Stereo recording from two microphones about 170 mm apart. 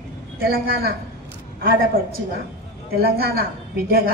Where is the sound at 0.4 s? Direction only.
65° right (ahead or behind).